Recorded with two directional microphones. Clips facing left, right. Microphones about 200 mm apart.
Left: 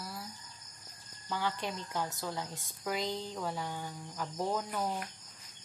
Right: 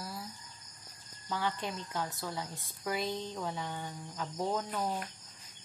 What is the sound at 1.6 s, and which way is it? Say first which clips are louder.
Speech: left 1 dB; 15° left (ahead or behind).